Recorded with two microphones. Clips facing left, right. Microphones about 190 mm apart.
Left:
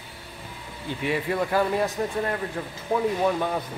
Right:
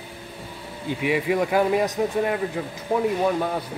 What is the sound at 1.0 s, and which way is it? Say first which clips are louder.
Speech: right 4 dB; 10° right (ahead or behind).